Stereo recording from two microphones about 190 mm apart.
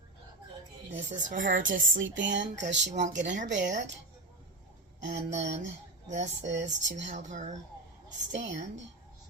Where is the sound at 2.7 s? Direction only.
65° right (ahead or behind).